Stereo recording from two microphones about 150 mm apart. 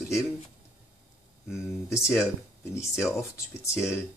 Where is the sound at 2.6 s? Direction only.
15° left (ahead or behind).